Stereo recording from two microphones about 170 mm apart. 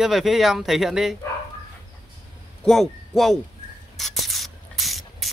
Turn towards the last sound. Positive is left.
turn(degrees=0)  # may be behind; listen again after turning